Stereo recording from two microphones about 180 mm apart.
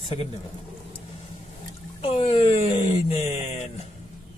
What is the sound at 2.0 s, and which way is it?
A man's voice, 35° left (ahead or behind).